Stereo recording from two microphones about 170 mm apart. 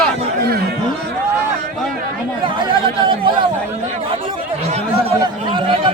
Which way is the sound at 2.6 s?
30° right (ahead or behind).